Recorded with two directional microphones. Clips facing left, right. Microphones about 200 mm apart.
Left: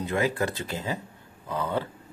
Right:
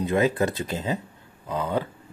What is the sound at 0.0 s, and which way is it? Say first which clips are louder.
Speech: right 4 dB; 20° right (ahead or behind).